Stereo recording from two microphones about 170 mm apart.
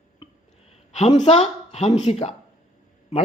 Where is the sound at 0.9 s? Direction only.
35° left (ahead or behind).